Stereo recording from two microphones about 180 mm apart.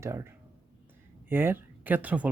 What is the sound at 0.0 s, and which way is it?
Speech, 15° right (ahead or behind).